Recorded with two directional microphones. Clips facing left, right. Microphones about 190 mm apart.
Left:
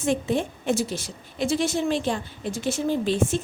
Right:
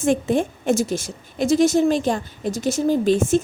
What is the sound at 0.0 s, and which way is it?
A woman's voice, 50° right (ahead or behind).